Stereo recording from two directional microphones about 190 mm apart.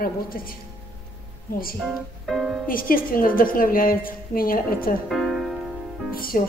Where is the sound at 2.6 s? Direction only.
50° left (ahead or behind).